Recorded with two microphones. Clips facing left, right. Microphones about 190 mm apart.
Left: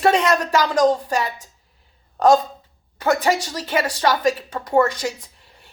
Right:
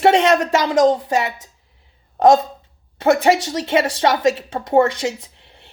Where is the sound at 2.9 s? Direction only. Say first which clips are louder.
Right 4 dB; 25° right (ahead or behind).